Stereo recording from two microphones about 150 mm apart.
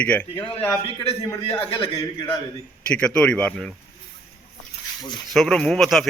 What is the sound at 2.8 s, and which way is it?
Speech, 5° left (ahead or behind).